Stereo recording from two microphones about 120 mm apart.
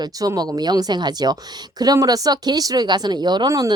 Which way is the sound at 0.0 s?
30° right (ahead or behind).